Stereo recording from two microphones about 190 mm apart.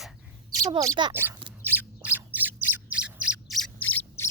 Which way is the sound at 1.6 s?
10° right (ahead or behind).